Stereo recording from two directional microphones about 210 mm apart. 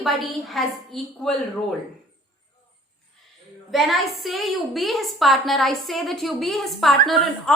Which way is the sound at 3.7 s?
Centre (ahead or behind).